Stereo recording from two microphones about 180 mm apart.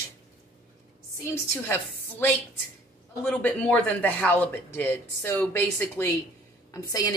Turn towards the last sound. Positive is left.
turn(degrees=20)  # may be behind; listen again after turning